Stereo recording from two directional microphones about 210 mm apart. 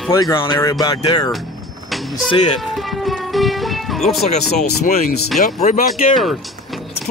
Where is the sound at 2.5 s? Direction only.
Centre (ahead or behind).